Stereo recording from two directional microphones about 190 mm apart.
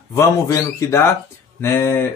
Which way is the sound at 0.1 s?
15° left (ahead or behind).